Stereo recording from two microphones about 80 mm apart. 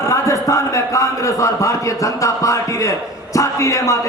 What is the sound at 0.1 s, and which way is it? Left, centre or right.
A man's voice, left.